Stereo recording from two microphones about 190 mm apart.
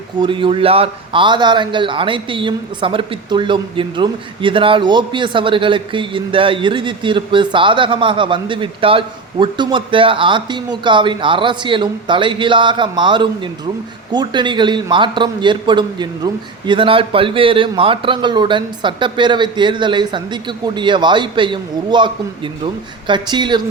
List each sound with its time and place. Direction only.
0.2 s a man's voice: 25° right (ahead or behind)